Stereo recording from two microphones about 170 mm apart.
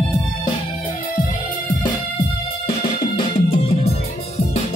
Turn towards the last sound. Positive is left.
turn(degrees=35)  # may be behind; listen again after turning